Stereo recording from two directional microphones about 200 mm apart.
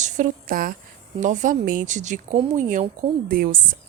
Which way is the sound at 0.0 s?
40° right (ahead or behind).